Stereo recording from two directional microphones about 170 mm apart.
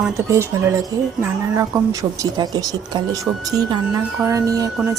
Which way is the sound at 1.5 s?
20° right (ahead or behind).